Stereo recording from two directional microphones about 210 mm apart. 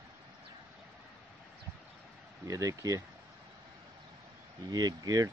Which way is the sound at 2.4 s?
15° right (ahead or behind).